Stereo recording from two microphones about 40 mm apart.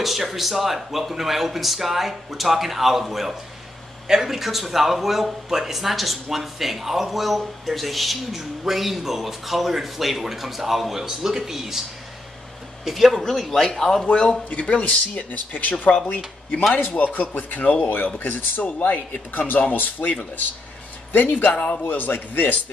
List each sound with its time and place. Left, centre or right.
0.0 s speech: centre
12.8 s speech: centre
14.0 s a man's voice: left
15.3 s speech: left
16.7 s speech: left
17.8 s speech: left